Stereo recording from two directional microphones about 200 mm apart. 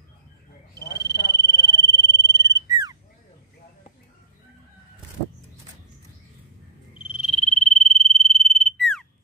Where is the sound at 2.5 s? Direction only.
20° right (ahead or behind).